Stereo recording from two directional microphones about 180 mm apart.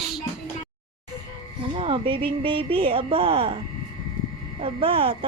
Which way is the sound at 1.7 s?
30° right (ahead or behind).